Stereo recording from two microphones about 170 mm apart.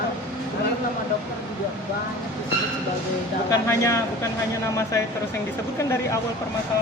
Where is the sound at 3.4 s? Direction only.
20° left (ahead or behind).